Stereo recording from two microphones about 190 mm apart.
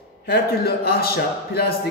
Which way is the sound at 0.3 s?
55° left (ahead or behind).